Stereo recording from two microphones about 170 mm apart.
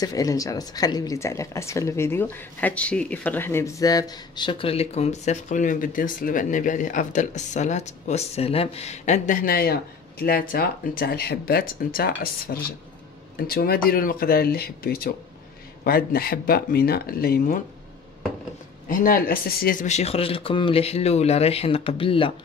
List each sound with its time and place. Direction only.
0.0 s speech: 20° left (ahead or behind); by 17.6 s 60° left (ahead or behind)
18.9 s speech: 55° left (ahead or behind); by 22.3 s 30° left (ahead or behind)